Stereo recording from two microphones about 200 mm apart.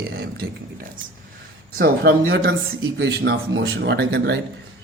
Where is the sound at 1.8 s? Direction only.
50° right (ahead or behind).